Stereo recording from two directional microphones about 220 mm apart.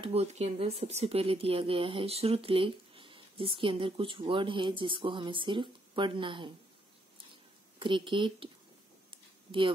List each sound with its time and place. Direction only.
0.0 s speech: 30° right (ahead or behind)
7.8 s speech: 20° right (ahead or behind)